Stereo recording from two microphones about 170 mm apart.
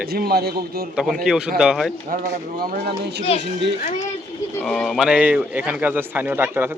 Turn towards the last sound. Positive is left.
turn(degrees=-10)  # may be behind; listen again after turning